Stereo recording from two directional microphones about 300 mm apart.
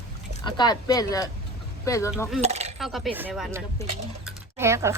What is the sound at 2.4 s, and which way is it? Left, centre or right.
Speech, right.